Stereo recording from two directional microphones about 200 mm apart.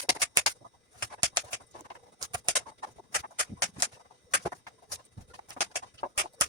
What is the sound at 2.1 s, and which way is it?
Bird, 20° right (ahead or behind).